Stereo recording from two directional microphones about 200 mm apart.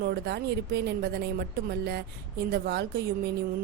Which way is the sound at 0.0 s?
55° right (ahead or behind).